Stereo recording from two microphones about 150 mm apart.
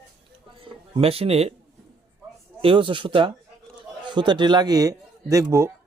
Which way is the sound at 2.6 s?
35° right (ahead or behind).